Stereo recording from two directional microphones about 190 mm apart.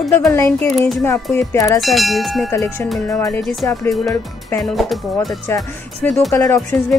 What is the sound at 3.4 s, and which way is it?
Speech, centre (ahead or behind).